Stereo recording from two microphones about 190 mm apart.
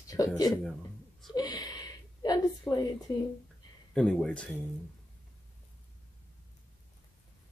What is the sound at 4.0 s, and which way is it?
Speech, 5° left (ahead or behind).